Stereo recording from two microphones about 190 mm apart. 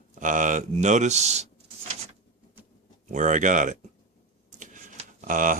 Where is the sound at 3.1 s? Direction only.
40° right (ahead or behind).